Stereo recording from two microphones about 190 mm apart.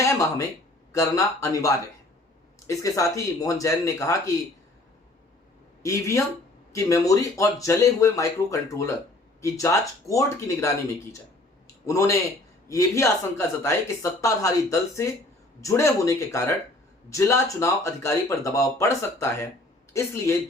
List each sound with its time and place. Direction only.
0.0 s a sound: 15° left (ahead or behind)
0.9 s speech: 15° left (ahead or behind)
5.8 s speech: 15° left (ahead or behind)
11.9 s a man's voice: 15° left (ahead or behind)